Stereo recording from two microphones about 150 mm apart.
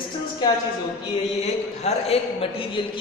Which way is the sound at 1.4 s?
45° left (ahead or behind).